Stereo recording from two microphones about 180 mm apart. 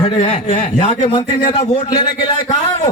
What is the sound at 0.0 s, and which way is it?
A man's voice, 35° left (ahead or behind).